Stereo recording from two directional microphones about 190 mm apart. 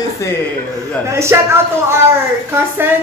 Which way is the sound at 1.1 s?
15° right (ahead or behind).